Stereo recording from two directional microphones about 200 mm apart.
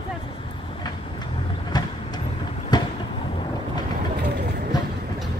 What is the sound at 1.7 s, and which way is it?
Vehicle, 20° left (ahead or behind).